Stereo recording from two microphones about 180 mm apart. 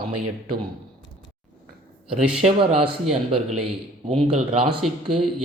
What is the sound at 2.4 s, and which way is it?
Speech, 30° right (ahead or behind).